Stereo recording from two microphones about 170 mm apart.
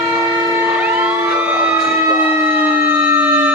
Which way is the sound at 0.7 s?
10° right (ahead or behind).